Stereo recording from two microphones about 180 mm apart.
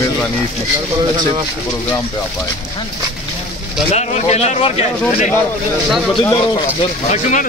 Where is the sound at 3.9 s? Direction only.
35° left (ahead or behind).